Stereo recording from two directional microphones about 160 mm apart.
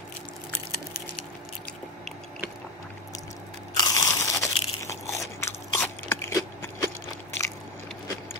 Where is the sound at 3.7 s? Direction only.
20° left (ahead or behind).